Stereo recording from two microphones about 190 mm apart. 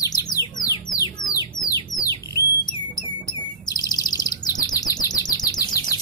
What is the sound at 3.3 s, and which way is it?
Chirp, 20° left (ahead or behind).